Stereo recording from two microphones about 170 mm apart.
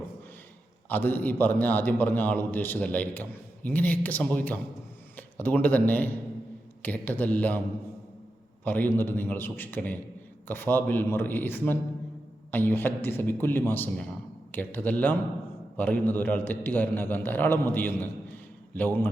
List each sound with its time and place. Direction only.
0.9 s a man's voice: 10° left (ahead or behind)
8.6 s a man's voice: 10° left (ahead or behind)